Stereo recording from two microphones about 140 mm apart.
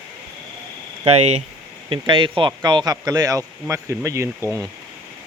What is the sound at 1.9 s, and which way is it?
Speech, 35° right (ahead or behind).